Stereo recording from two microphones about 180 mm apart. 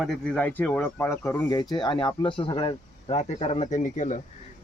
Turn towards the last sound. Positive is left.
turn(degrees=45)  # may be behind; listen again after turning